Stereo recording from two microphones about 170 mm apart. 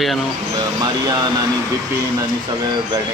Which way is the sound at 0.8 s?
20° right (ahead or behind).